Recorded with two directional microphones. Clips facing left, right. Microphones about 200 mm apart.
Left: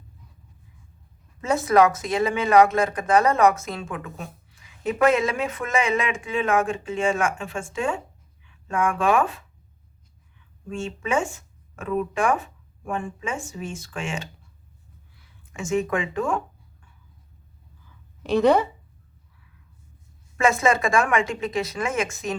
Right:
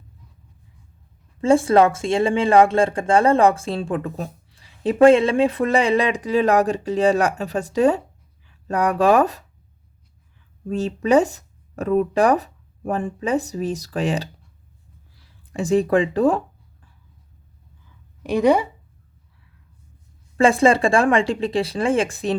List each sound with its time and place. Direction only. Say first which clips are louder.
1.4 s speech: right 4 dB; 30° right (ahead or behind)
10.7 s speech: right 9 dB; 35° right (ahead or behind)
18.2 s speech: right 1 dB; 15° right (ahead or behind)
20.3 s speech: right 5 dB; 30° right (ahead or behind)